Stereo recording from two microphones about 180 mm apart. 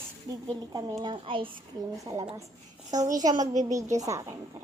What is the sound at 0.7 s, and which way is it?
Speech, 20° right (ahead or behind).